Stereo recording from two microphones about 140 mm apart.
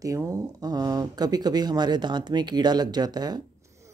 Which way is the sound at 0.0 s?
20° right (ahead or behind).